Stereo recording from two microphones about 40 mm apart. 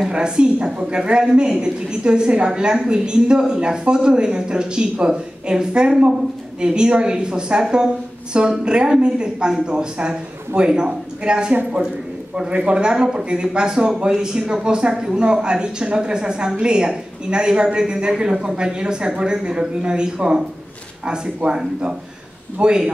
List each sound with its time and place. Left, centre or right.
0.1 s speech: right